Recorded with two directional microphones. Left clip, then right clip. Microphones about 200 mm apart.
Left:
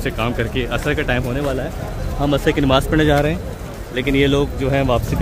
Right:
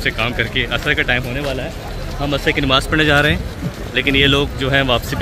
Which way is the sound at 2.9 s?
15° left (ahead or behind).